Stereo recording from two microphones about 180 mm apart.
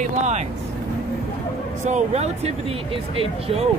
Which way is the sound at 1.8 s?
40° right (ahead or behind).